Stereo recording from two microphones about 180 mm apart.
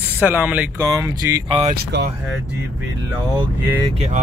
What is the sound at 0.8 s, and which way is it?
Speech, 20° right (ahead or behind).